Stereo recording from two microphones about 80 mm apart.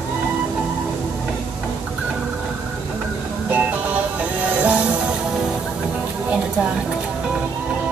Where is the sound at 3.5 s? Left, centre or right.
Centre.